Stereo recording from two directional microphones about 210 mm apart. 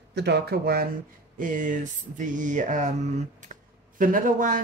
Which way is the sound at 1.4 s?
40° right (ahead or behind).